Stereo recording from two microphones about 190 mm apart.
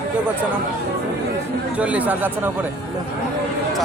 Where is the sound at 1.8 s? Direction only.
5° right (ahead or behind).